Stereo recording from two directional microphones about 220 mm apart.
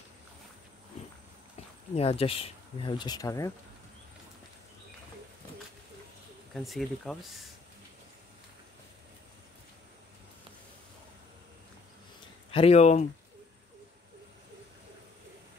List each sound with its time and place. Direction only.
2.0 s speech: 25° left (ahead or behind)
6.5 s speech: centre (ahead or behind)
12.4 s speech: 25° left (ahead or behind)